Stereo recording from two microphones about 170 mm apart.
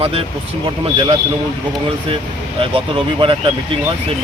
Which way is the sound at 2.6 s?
30° right (ahead or behind).